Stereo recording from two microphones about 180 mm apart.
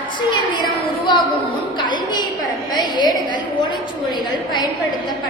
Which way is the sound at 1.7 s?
25° left (ahead or behind).